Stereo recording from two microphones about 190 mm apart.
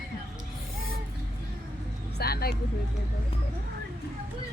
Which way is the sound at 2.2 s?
55° left (ahead or behind).